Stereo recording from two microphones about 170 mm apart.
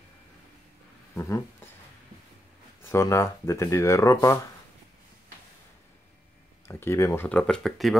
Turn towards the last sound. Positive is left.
turn(degrees=0)  # may be behind; listen again after turning